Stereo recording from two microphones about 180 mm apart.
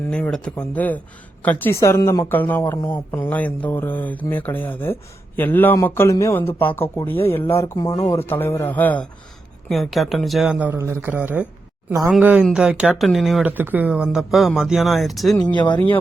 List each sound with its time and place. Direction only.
0.1 s speech: 5° left (ahead or behind)
15.5 s speech: 25° left (ahead or behind)